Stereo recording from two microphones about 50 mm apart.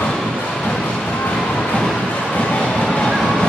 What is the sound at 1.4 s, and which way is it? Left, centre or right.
Music, centre.